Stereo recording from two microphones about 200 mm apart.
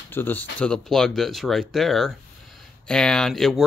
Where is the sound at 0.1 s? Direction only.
10° left (ahead or behind).